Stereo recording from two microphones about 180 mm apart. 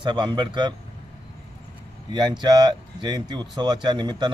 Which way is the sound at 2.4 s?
25° right (ahead or behind).